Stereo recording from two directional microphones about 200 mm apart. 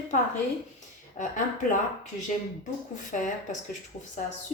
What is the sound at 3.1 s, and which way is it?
Speech, 40° left (ahead or behind).